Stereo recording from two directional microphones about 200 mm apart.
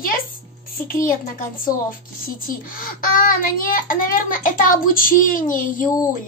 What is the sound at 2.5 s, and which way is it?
A woman's voice, 45° left (ahead or behind).